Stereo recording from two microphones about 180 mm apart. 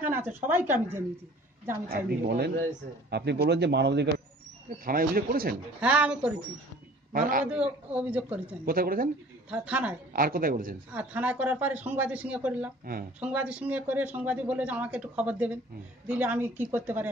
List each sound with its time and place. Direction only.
0.0 s speech: 10° right (ahead or behind)
1.9 s speech: 55° right (ahead or behind)
4.8 s speech: 55° right (ahead or behind)
5.8 s speech: 5° right (ahead or behind)
7.1 s a man's voice: 50° right (ahead or behind)
7.5 s speech: 5° right (ahead or behind)
8.6 s a woman's voice: 55° right (ahead or behind)
9.5 s speech: 5° right (ahead or behind)
10.1 s a woman's voice: 55° right (ahead or behind)
10.9 s speech: 5° right (ahead or behind)